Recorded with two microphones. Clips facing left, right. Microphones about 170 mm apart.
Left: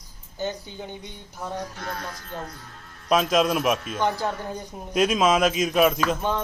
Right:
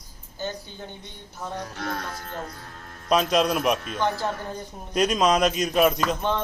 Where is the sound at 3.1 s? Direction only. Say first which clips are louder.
Left 1 dB; centre (ahead or behind).